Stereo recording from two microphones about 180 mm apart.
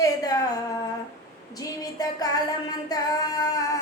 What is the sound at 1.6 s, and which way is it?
Music, 20° left (ahead or behind).